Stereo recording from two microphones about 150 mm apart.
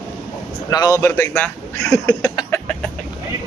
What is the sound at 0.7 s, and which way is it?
Speech, 25° left (ahead or behind).